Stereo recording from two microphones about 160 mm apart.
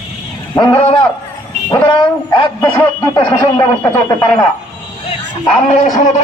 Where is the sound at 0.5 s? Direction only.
30° left (ahead or behind).